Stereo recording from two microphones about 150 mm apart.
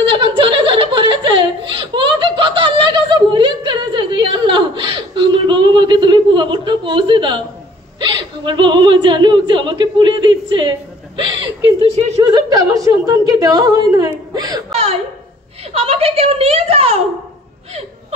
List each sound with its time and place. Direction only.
0.2 s laughter: 35° right (ahead or behind)
8.0 s a woman's voice: 35° right (ahead or behind)
14.7 s a woman's voice: 40° right (ahead or behind)